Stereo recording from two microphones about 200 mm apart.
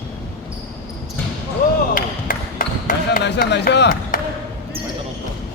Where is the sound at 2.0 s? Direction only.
45° left (ahead or behind).